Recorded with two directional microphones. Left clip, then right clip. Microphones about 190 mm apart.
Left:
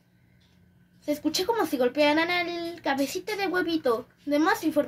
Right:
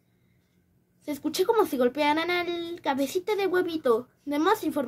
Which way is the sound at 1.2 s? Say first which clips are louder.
Right 4 dB; 30° right (ahead or behind).